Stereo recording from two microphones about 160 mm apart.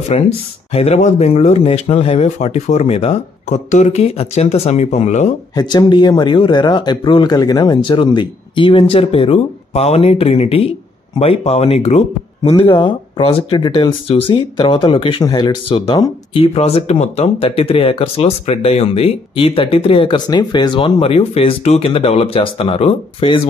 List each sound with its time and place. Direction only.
0.1 s speech: 45° left (ahead or behind)
5.6 s speech: 25° left (ahead or behind)